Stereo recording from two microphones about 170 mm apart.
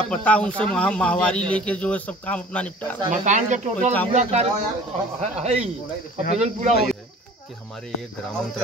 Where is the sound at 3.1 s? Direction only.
45° right (ahead or behind).